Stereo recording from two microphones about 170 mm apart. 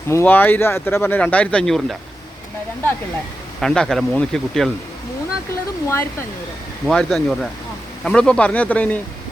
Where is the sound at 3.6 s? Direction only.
5° left (ahead or behind).